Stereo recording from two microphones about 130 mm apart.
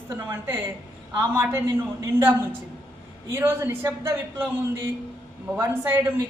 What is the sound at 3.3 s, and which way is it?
A woman's voice, 20° right (ahead or behind).